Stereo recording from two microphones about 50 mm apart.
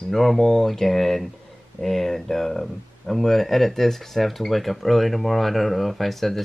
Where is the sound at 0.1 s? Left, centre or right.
Centre.